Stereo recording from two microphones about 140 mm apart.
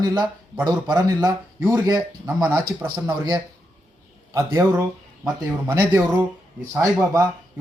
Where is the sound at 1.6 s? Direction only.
15° right (ahead or behind).